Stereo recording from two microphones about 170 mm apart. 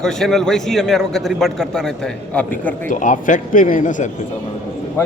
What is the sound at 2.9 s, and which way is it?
A man's voice, 50° left (ahead or behind).